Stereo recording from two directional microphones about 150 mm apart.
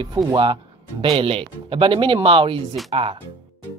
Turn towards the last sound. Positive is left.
turn(degrees=-40)  # may be behind; listen again after turning